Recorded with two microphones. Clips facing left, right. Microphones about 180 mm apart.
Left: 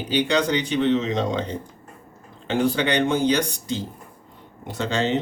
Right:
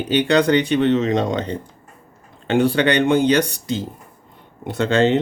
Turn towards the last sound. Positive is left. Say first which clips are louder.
# right 7 dB
turn(degrees=-60)  # may be behind; listen again after turning